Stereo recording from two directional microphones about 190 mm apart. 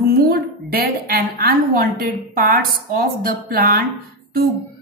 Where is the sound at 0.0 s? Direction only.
55° right (ahead or behind).